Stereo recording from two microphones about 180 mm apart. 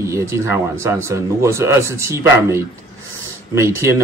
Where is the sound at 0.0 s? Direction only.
15° right (ahead or behind).